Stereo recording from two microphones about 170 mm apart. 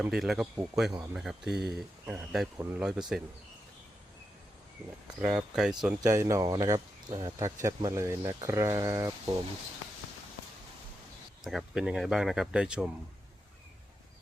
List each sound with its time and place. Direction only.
0.0 s speech: centre (ahead or behind)
5.2 s speech: 5° right (ahead or behind)
6.0 s speech: 20° right (ahead or behind)
11.4 s speech: centre (ahead or behind)